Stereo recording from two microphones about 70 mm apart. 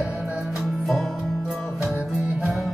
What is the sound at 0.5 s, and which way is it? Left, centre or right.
Music, centre.